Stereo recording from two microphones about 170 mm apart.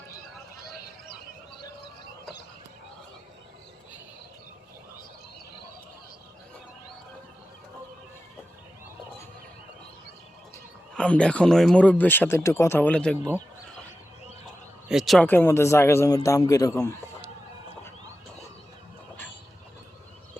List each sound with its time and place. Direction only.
10.9 s speech: 5° left (ahead or behind)
14.8 s speech: centre (ahead or behind)
15.3 s speech: 15° left (ahead or behind)